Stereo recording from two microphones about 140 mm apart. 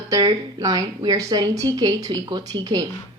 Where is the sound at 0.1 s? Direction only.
30° right (ahead or behind).